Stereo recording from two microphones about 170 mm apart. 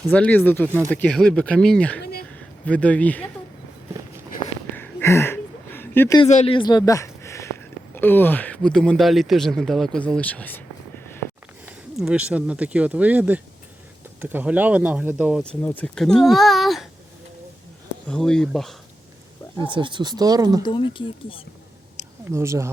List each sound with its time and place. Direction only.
0.1 s speech: 10° left (ahead or behind)
2.0 s speech: 65° left (ahead or behind)
2.3 s speech: 5° left (ahead or behind)
4.7 s a sound: 10° left (ahead or behind)
6.2 s speech: 40° left (ahead or behind); by 10.6 s 10° left (ahead or behind)
11.6 s speech: 5° right (ahead or behind)
15.6 s speech: 10° left (ahead or behind)
18.1 s speech: 5° left (ahead or behind)
19.6 s speech: 30° right (ahead or behind)
20.6 s speech: 25° left (ahead or behind)
22.3 s speech: 15° right (ahead or behind)